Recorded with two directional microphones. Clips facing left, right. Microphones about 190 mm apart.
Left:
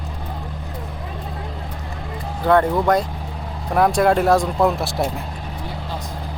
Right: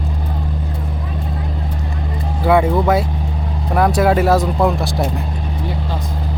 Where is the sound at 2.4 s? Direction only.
10° right (ahead or behind).